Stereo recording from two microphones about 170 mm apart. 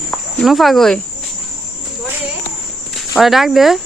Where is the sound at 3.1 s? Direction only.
Centre (ahead or behind).